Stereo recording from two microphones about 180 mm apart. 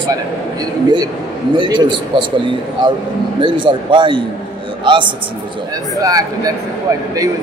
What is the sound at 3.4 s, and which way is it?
A man's voice, 25° right (ahead or behind).